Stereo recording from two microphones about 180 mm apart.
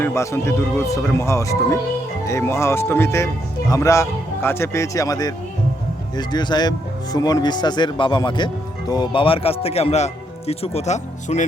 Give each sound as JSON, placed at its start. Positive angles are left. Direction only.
{"t": 0.0, "sound": "speech", "side_deg": 15}